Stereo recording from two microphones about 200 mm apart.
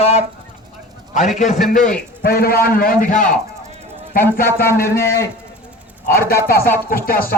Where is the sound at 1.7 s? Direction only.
40° left (ahead or behind).